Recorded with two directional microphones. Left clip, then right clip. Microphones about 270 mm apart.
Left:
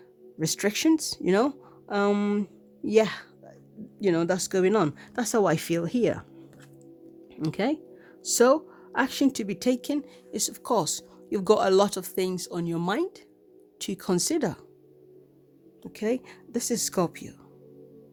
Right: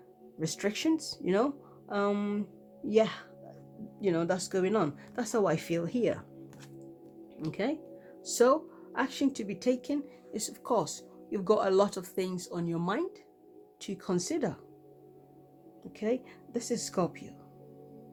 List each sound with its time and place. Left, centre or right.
0.3 s speech: left
7.4 s speech: left
15.8 s speech: left